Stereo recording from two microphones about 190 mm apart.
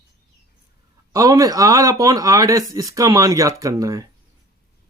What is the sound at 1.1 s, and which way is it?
Speech, 15° right (ahead or behind).